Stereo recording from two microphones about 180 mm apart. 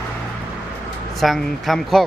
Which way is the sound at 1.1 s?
Centre (ahead or behind).